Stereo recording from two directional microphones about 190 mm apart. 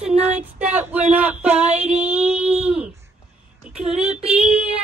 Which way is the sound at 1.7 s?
35° right (ahead or behind).